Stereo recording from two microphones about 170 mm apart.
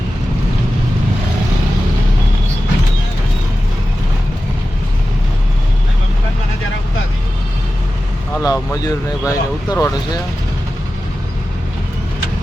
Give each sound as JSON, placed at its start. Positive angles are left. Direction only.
{"t": 8.4, "sound": "speech", "side_deg": 20}